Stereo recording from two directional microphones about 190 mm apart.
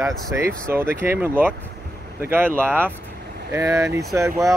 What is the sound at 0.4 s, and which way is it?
Speech, 15° right (ahead or behind).